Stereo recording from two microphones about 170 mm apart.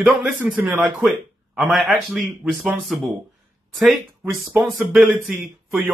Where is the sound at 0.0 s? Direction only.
10° right (ahead or behind).